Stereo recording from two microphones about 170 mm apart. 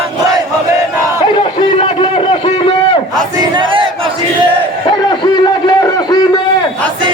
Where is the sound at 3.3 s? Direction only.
25° right (ahead or behind).